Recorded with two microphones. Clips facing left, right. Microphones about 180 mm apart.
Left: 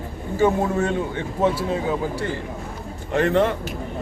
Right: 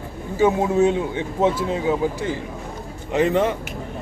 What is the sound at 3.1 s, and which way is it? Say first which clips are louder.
Speech: even; 15° right (ahead or behind).